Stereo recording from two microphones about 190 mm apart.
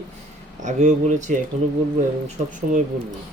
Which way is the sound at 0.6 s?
40° right (ahead or behind).